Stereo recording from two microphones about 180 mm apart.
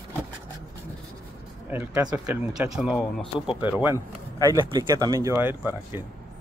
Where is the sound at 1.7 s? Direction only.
10° right (ahead or behind).